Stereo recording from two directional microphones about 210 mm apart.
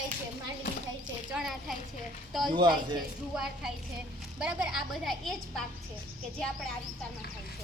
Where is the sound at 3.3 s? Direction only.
5° right (ahead or behind).